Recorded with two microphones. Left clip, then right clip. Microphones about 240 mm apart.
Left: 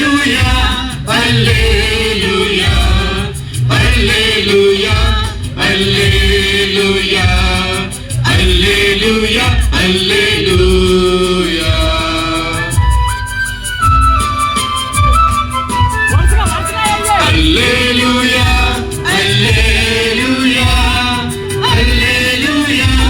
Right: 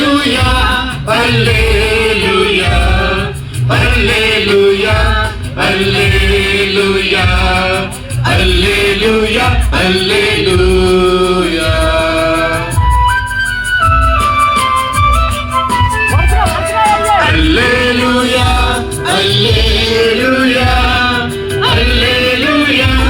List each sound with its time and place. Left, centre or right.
0.0 s music: left
3.8 s music: left
16.8 s music: left